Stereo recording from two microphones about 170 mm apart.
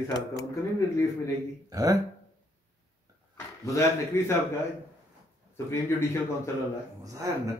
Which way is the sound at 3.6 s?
15° left (ahead or behind).